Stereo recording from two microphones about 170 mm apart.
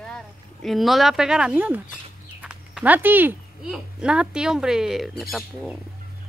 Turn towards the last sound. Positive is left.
turn(degrees=0)  # may be behind; listen again after turning